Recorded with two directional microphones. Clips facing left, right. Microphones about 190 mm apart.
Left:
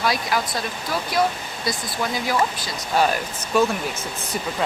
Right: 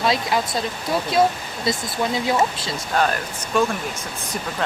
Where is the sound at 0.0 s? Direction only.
25° right (ahead or behind).